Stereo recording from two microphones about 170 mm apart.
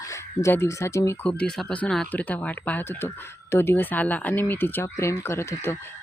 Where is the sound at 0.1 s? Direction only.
15° left (ahead or behind).